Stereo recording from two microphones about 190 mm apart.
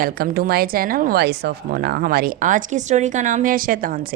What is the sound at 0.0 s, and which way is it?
A woman's voice, 50° right (ahead or behind).